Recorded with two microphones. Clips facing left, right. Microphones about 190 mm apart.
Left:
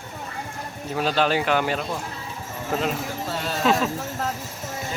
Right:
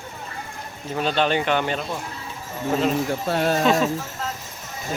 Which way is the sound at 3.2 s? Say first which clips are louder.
Right 8 dB; 55° right (ahead or behind).